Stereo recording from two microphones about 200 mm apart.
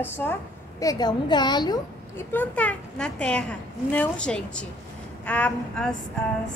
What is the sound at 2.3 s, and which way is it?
A woman's voice, 5° left (ahead or behind).